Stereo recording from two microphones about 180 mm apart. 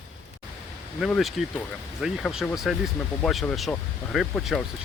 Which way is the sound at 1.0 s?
Centre (ahead or behind).